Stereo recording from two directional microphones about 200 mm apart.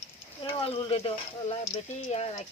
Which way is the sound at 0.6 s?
30° left (ahead or behind).